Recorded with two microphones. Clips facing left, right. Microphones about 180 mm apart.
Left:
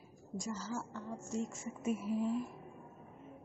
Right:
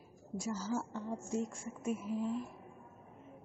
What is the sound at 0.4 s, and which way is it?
Speech, 10° right (ahead or behind).